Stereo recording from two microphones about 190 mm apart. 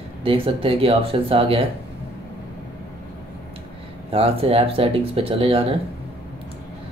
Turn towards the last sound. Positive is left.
turn(degrees=-30)  # may be behind; listen again after turning